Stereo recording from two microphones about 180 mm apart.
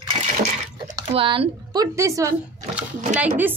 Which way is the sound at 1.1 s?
30° right (ahead or behind).